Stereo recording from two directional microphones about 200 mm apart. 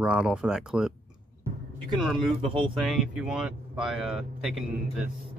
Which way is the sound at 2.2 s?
25° right (ahead or behind).